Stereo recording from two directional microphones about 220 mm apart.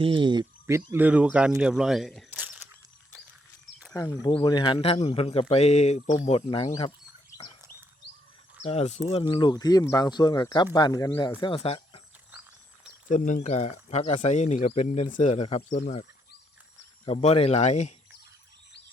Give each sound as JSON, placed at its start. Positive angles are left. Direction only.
{"t": 0.0, "sound": "speech", "side_deg": -20}
{"t": 3.9, "sound": "speech", "side_deg": 15}
{"t": 8.6, "sound": "speech", "side_deg": 30}
{"t": 11.3, "sound": "speech", "side_deg": 25}
{"t": 13.1, "sound": "speech", "side_deg": 35}
{"t": 17.1, "sound": "speech", "side_deg": 30}